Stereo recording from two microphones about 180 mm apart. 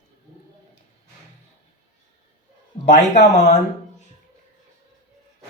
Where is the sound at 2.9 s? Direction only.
40° left (ahead or behind).